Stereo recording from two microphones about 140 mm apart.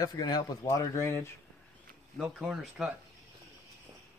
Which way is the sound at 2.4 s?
5° right (ahead or behind).